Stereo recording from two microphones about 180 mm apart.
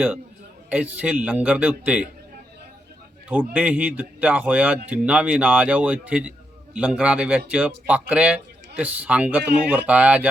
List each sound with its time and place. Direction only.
0.7 s speech: 5° right (ahead or behind)
3.2 s speech: 10° right (ahead or behind)